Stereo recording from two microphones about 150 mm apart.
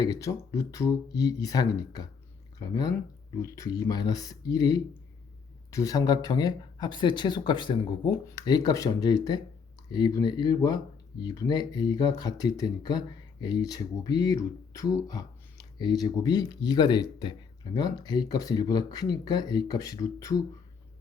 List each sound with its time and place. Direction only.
0.0 s speech: 20° left (ahead or behind)